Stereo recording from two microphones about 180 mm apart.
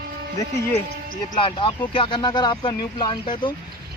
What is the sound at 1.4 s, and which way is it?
Speech, 30° left (ahead or behind).